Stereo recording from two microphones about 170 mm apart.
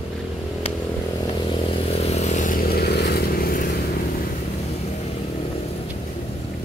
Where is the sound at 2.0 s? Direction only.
40° left (ahead or behind).